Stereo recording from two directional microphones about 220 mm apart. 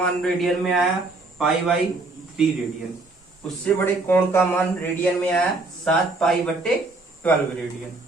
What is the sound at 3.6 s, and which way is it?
Speech, 10° left (ahead or behind).